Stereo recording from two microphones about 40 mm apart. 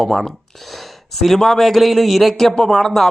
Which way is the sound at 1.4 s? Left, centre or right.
Centre.